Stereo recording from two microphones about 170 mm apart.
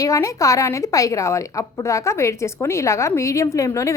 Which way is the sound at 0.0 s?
20° left (ahead or behind).